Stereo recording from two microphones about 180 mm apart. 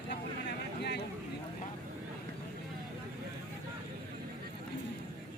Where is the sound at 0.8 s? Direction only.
65° left (ahead or behind).